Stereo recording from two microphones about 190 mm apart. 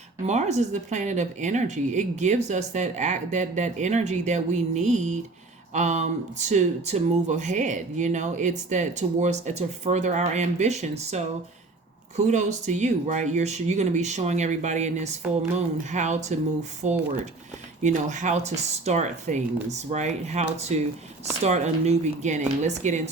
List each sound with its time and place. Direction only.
0.3 s speech: 35° right (ahead or behind)